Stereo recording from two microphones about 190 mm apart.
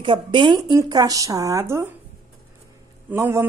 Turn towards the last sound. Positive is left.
turn(degrees=-15)  # may be behind; listen again after turning